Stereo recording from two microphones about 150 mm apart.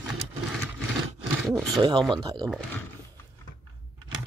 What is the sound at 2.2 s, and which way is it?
Speech, 30° right (ahead or behind).